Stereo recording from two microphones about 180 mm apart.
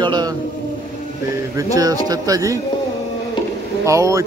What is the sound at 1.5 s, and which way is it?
A man's voice, 20° right (ahead or behind).